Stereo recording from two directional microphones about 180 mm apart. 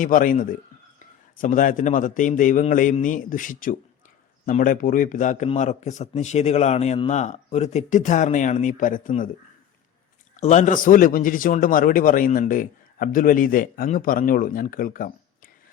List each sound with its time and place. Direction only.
0.0 s a man's voice: 50° left (ahead or behind)
10.3 s a man's voice: 40° left (ahead or behind)